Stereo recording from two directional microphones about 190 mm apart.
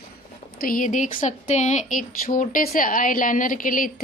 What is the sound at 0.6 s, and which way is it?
A woman's voice, 45° left (ahead or behind).